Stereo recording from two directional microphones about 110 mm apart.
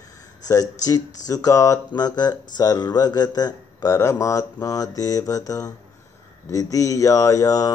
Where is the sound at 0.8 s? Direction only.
30° left (ahead or behind).